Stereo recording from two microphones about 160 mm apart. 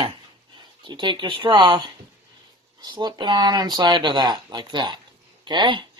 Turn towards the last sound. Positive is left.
turn(degrees=-30)  # may be behind; listen again after turning